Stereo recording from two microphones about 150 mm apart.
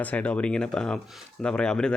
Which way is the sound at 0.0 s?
10° left (ahead or behind).